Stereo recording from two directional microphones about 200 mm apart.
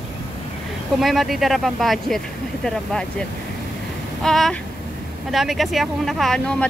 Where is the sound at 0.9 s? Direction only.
Centre (ahead or behind).